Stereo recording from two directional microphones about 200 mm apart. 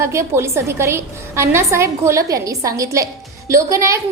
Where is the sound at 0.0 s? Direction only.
15° right (ahead or behind).